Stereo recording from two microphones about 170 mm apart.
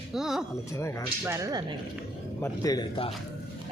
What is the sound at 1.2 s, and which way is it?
Speech, 20° right (ahead or behind).